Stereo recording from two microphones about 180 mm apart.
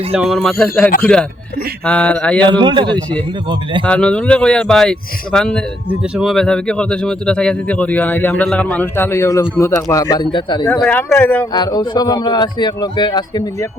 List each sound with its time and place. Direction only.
0.1 s speech: centre (ahead or behind)
2.5 s speech: 25° right (ahead or behind)
3.8 s speech: 5° left (ahead or behind); by 10.7 s 25° left (ahead or behind)
10.8 s speech: 10° left (ahead or behind)
11.5 s speech: 25° left (ahead or behind)